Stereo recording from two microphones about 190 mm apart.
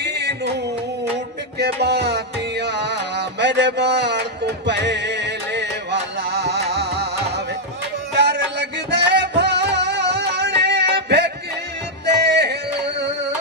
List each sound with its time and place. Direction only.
0.0 s music: 60° right (ahead or behind)
1.6 s music: 60° right (ahead or behind)